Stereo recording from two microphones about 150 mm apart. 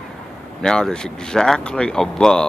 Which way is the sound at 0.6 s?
5° left (ahead or behind).